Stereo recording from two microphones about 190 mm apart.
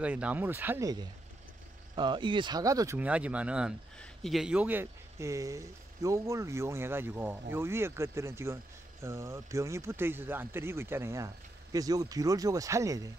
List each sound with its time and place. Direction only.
0.0 s speech: 10° right (ahead or behind)
2.0 s speech: 25° right (ahead or behind)